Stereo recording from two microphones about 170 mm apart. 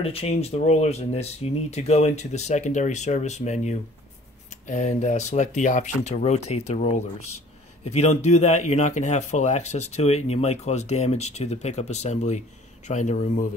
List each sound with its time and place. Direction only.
0.0 s speech: 35° left (ahead or behind)